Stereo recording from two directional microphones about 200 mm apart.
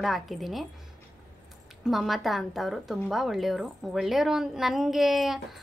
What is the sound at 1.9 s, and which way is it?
A woman's voice, centre (ahead or behind).